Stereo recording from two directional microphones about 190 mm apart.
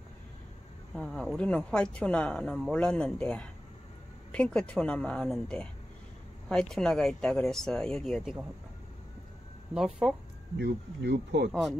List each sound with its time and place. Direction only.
0.9 s speech: centre (ahead or behind)
9.8 s speech: 5° right (ahead or behind)
10.6 s speech: 65° right (ahead or behind)